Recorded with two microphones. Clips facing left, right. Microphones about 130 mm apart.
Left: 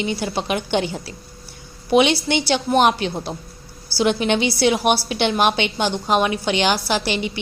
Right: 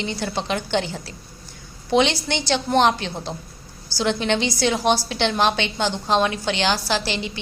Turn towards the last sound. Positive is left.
turn(degrees=15)  # may be behind; listen again after turning